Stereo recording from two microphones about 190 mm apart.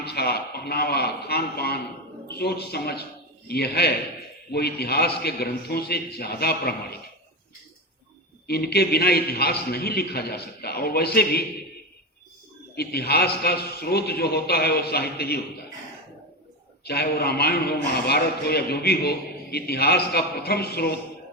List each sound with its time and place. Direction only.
0.0 s a man's voice: 60° left (ahead or behind)
8.4 s a man's voice: 55° left (ahead or behind)
12.7 s a man's voice: 55° left (ahead or behind)
16.8 s a man's voice: 55° left (ahead or behind)